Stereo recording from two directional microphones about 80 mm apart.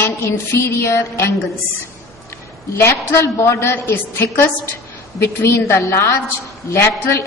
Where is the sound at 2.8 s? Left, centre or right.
Left.